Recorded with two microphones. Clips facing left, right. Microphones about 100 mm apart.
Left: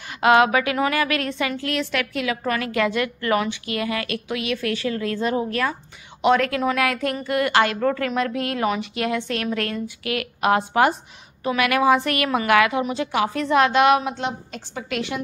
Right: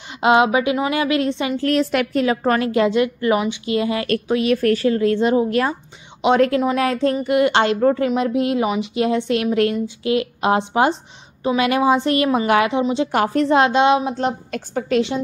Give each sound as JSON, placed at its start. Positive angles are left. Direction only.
{"t": 0.2, "sound": "a woman's voice", "side_deg": -20}
{"t": 1.6, "sound": "a woman's voice", "side_deg": -40}
{"t": 4.1, "sound": "a woman's voice", "side_deg": -40}
{"t": 13.1, "sound": "a woman's voice", "side_deg": -50}
{"t": 13.4, "sound": "a woman's voice", "side_deg": -30}
{"t": 14.1, "sound": "a woman's voice", "side_deg": -45}
{"t": 15.0, "sound": "a woman's voice", "side_deg": -25}